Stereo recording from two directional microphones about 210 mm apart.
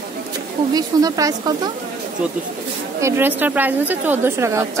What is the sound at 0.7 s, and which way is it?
Speech, 15° right (ahead or behind).